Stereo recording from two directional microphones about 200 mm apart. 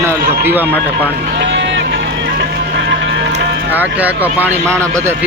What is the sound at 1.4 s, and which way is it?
Run, 60° right (ahead or behind).